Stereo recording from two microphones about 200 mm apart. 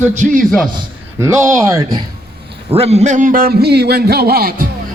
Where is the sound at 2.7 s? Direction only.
30° right (ahead or behind).